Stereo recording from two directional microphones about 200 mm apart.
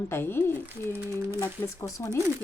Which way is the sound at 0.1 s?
10° left (ahead or behind).